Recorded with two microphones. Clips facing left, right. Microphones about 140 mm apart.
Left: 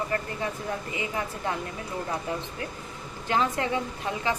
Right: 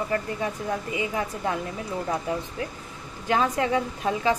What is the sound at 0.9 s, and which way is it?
Speech, 20° right (ahead or behind).